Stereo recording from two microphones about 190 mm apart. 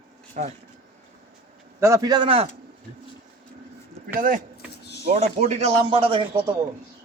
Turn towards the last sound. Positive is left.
turn(degrees=-25)  # may be behind; listen again after turning